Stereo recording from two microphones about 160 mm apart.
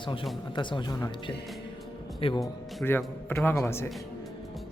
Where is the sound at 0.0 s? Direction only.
35° left (ahead or behind).